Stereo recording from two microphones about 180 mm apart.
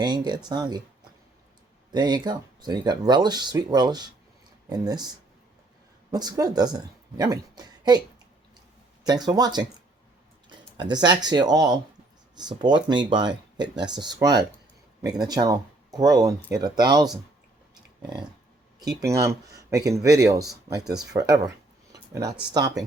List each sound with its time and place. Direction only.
0.0 s speech: 25° right (ahead or behind)
1.9 s a woman's voice: 25° right (ahead or behind)
9.0 s speech: 20° right (ahead or behind)
21.9 s a sound: 20° right (ahead or behind)
22.5 s speech: 20° right (ahead or behind)